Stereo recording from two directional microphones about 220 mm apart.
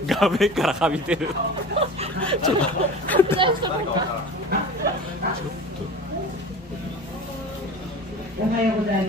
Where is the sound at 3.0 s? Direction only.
5° left (ahead or behind).